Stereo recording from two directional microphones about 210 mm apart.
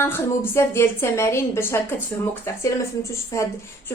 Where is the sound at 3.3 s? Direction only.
15° left (ahead or behind).